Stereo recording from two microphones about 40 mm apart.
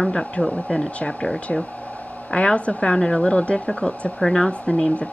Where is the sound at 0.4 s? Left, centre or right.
Centre.